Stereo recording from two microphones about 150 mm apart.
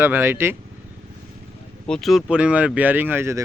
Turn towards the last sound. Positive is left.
turn(degrees=-15)  # may be behind; listen again after turning